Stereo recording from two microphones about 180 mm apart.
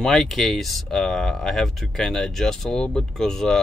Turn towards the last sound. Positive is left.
turn(degrees=0)  # may be behind; listen again after turning